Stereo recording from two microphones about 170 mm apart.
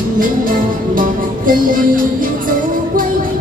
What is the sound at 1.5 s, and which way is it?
Music, 55° right (ahead or behind).